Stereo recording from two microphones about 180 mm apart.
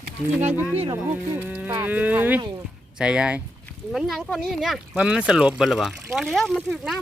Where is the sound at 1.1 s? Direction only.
10° right (ahead or behind).